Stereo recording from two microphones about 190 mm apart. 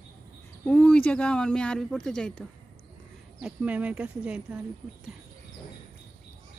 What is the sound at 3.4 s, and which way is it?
Speech, 5° right (ahead or behind).